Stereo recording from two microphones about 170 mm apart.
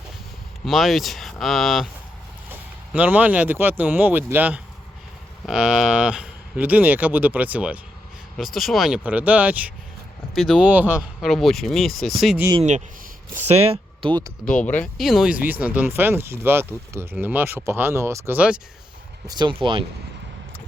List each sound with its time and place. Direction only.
0.6 s speech: centre (ahead or behind)
13.3 s speech: 40° right (ahead or behind)
14.6 s speech: 10° left (ahead or behind); by 18.6 s 10° right (ahead or behind)
19.3 s speech: 30° right (ahead or behind)